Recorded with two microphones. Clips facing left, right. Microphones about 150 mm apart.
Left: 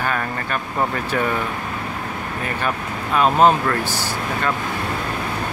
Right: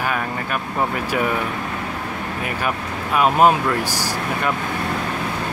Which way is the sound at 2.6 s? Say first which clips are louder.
Even; 10° right (ahead or behind).